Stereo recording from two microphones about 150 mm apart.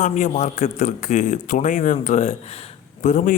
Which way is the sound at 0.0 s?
55° left (ahead or behind).